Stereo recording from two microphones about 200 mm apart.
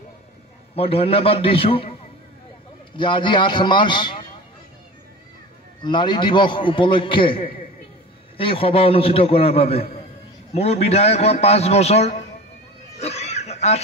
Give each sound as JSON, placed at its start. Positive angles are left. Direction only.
{"t": 0.7, "sound": "a man's voice", "side_deg": 30}
{"t": 3.0, "sound": "a man's voice", "side_deg": 25}
{"t": 5.8, "sound": "a man's voice", "side_deg": 20}
{"t": 13.0, "sound": "pig", "side_deg": 30}